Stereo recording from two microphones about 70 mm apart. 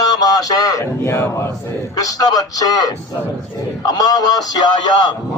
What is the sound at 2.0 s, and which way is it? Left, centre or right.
Speech, left.